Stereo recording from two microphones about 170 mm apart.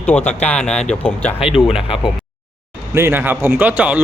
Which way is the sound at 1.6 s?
30° left (ahead or behind).